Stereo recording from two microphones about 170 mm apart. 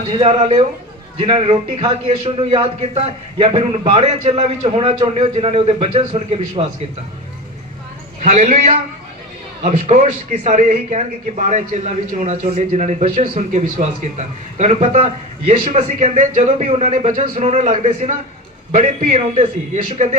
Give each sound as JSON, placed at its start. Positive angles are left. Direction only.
{"t": 0.0, "sound": "a man's voice", "side_deg": -35}
{"t": 8.2, "sound": "a man's voice", "side_deg": -40}